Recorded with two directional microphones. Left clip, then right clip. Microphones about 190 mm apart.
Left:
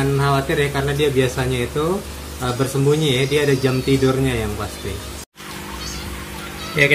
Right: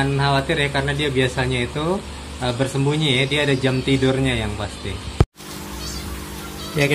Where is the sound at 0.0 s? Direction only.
15° left (ahead or behind).